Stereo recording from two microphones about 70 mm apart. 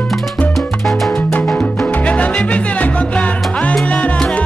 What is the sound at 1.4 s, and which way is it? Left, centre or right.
Music, centre.